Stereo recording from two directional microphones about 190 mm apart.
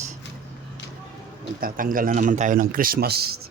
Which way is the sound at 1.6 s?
45° right (ahead or behind).